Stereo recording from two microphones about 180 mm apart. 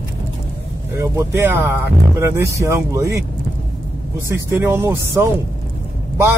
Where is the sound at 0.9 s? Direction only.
15° right (ahead or behind).